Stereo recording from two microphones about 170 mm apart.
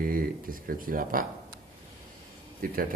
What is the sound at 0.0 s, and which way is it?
Speech, 55° right (ahead or behind).